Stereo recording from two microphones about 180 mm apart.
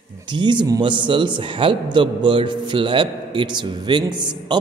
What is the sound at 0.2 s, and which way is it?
A man's voice, 25° right (ahead or behind).